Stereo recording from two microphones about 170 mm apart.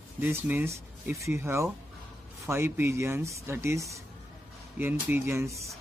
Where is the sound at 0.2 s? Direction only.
10° right (ahead or behind).